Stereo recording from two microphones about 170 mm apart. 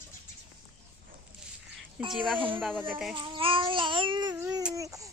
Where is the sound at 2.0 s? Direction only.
30° right (ahead or behind).